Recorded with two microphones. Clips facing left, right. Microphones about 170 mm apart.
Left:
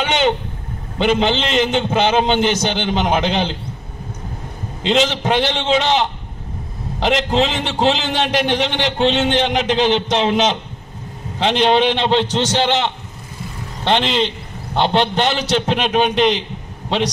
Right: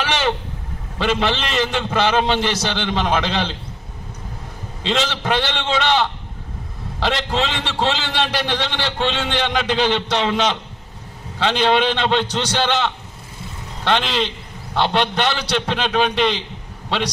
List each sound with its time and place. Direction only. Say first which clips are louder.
0.9 s a man's voice: left 4 dB; 20° left (ahead or behind)
4.8 s a man's voice: left 4 dB; 20° left (ahead or behind)